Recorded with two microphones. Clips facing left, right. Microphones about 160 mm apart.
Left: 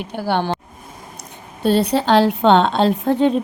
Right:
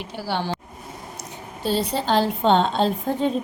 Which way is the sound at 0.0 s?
55° left (ahead or behind).